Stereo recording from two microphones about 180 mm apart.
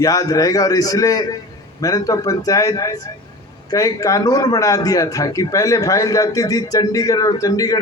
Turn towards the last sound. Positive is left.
turn(degrees=20)  # may be behind; listen again after turning